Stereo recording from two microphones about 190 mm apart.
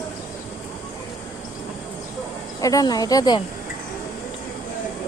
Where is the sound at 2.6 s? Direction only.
20° left (ahead or behind).